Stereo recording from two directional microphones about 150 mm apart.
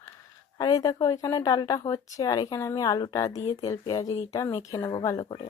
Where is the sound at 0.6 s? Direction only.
25° left (ahead or behind).